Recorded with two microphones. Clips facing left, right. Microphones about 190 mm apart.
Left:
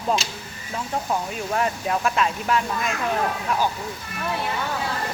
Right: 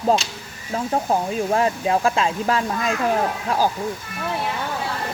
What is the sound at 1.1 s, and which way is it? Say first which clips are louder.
Speech: right 5 dB; 30° right (ahead or behind).